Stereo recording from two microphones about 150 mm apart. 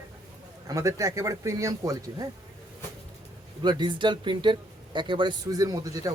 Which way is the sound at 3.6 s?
30° right (ahead or behind).